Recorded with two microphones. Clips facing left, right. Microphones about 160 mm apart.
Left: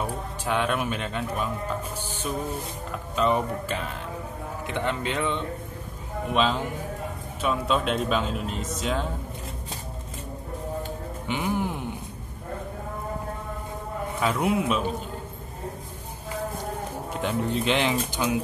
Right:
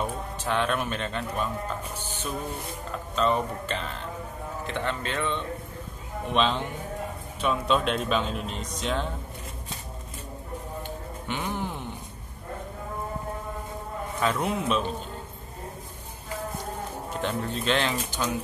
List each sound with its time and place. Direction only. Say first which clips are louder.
0.0 s speech: even; 10° left (ahead or behind)
3.2 s speech: left 1 dB; 15° left (ahead or behind)
6.3 s speech: left 1 dB; 5° left (ahead or behind)
11.2 s speech: left 4 dB; 10° left (ahead or behind)
14.2 s speech: left 2 dB; 10° left (ahead or behind)
17.1 s speech: left 3 dB; 15° left (ahead or behind)